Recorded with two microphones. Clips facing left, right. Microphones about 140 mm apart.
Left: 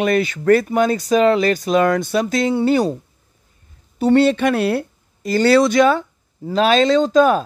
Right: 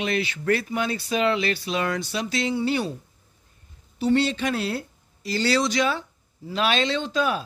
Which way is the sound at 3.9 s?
50° left (ahead or behind).